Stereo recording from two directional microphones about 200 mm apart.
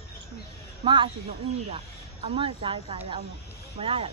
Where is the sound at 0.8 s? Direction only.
25° right (ahead or behind).